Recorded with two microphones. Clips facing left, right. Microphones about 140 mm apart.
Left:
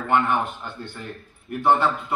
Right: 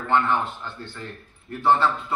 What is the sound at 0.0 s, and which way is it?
A man's voice, 15° left (ahead or behind).